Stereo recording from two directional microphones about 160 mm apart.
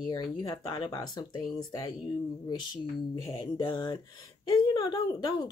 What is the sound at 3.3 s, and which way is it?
Speech, 30° left (ahead or behind).